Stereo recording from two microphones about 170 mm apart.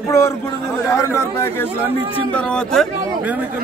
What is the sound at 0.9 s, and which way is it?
Speech, 15° left (ahead or behind).